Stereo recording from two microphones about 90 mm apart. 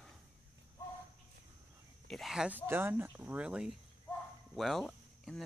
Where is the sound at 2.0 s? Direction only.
5° left (ahead or behind).